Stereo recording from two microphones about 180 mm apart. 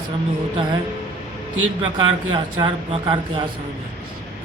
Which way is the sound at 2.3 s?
25° right (ahead or behind).